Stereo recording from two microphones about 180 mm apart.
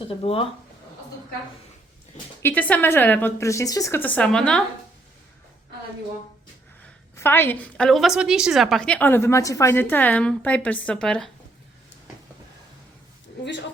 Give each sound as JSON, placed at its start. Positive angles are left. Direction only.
{"t": 0.2, "sound": "speech", "side_deg": 30}
{"t": 2.4, "sound": "a woman's voice", "side_deg": 10}
{"t": 7.2, "sound": "a woman's voice", "side_deg": 10}
{"t": 13.4, "sound": "speech", "side_deg": 80}